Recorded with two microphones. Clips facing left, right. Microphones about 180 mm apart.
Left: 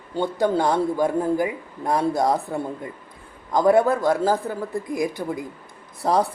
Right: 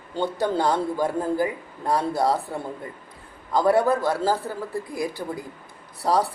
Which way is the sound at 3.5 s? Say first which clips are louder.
Left 2 dB; 20° left (ahead or behind).